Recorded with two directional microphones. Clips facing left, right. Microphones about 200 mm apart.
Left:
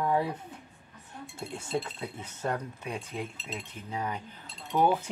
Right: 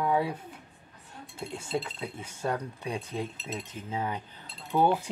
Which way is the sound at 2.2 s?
10° right (ahead or behind).